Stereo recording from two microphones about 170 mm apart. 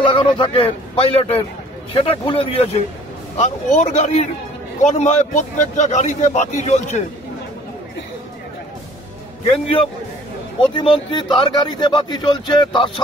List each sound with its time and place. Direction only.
0.0 s a man's voice: 30° left (ahead or behind)
9.5 s a man's voice: 35° left (ahead or behind)